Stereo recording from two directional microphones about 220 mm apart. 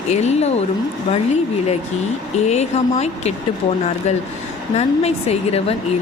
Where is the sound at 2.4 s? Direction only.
30° left (ahead or behind).